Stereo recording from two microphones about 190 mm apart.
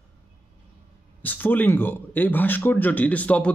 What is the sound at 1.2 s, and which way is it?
A man's voice, 10° left (ahead or behind).